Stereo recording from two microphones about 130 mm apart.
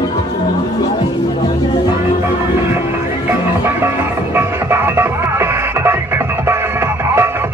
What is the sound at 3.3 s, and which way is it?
Music, 15° right (ahead or behind).